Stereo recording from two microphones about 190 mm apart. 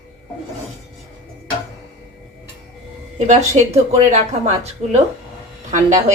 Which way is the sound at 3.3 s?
35° right (ahead or behind).